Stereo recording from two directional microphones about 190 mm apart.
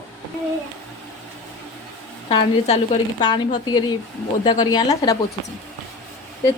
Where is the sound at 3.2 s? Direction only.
20° left (ahead or behind).